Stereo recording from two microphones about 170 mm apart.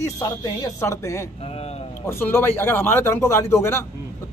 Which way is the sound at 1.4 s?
35° left (ahead or behind).